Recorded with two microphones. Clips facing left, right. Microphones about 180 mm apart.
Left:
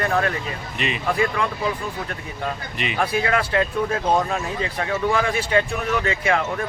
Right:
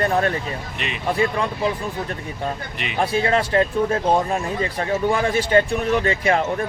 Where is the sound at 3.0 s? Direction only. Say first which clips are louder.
Right 3 dB; 30° right (ahead or behind).